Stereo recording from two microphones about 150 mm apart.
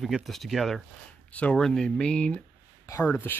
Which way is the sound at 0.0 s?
Centre (ahead or behind).